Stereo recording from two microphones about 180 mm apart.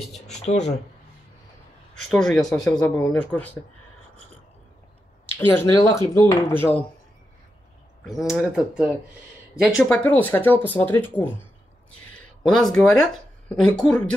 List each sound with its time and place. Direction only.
0.3 s speech: 35° left (ahead or behind)
2.0 s speech: centre (ahead or behind)
5.5 s speech: 15° left (ahead or behind)
8.0 s speech: centre (ahead or behind)
12.4 s speech: centre (ahead or behind)